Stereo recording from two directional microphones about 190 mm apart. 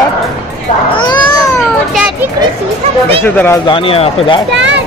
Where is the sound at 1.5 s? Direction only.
Centre (ahead or behind).